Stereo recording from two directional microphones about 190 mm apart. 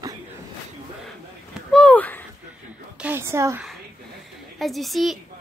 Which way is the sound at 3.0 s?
10° right (ahead or behind).